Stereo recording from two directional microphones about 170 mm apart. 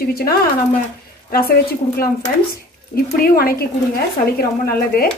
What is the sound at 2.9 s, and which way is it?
A woman's voice, 60° left (ahead or behind).